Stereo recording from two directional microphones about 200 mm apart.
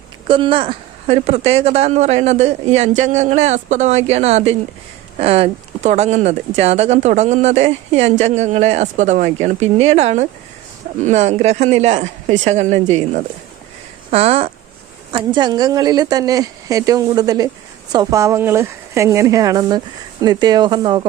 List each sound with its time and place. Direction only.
0.3 s speech: 25° right (ahead or behind)